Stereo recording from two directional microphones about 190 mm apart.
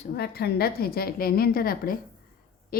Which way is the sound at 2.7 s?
50° left (ahead or behind).